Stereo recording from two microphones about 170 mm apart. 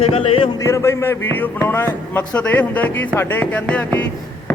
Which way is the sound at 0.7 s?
15° left (ahead or behind).